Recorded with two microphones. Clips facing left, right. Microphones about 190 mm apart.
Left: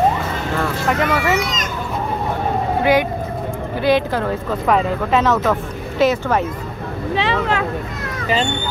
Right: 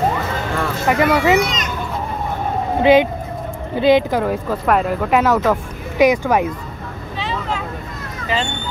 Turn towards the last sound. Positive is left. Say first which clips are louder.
# left 5 dB
turn(degrees=75)  # may be behind; listen again after turning